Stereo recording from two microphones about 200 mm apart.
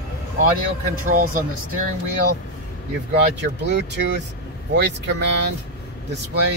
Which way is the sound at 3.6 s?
60° right (ahead or behind).